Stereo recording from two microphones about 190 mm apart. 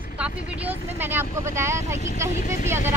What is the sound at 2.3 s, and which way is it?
Speech, 40° left (ahead or behind).